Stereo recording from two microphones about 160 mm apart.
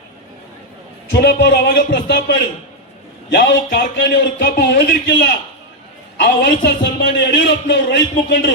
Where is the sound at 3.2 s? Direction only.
90° left.